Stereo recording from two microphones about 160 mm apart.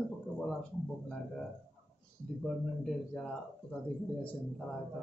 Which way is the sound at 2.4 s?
5° left (ahead or behind).